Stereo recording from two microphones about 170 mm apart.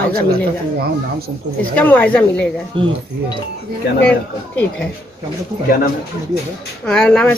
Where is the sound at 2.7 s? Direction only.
30° right (ahead or behind).